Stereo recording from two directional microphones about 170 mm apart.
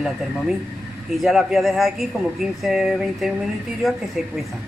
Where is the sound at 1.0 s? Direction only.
Centre (ahead or behind).